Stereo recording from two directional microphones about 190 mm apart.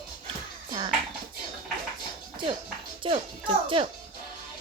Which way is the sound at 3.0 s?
25° right (ahead or behind).